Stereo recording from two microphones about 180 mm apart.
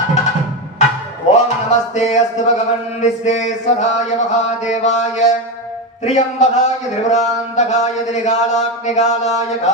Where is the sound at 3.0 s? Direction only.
40° left (ahead or behind).